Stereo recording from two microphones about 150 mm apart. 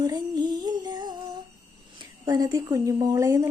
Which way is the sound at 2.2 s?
25° right (ahead or behind).